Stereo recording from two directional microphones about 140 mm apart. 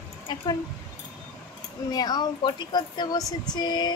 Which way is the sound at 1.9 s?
30° left (ahead or behind).